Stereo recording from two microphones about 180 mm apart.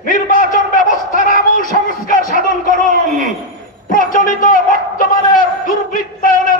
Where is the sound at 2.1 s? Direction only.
50° left (ahead or behind).